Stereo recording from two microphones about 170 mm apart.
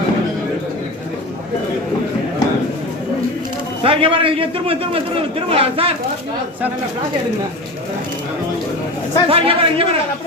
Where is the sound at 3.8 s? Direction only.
30° right (ahead or behind).